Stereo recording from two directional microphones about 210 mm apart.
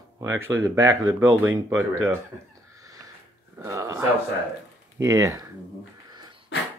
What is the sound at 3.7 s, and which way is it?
Speech, 15° right (ahead or behind).